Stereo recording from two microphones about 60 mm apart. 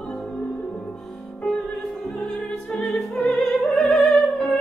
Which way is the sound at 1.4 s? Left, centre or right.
Centre.